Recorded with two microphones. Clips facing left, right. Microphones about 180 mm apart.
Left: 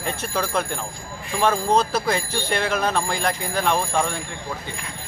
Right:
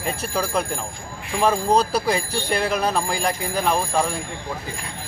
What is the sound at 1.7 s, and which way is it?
Speech, 35° right (ahead or behind).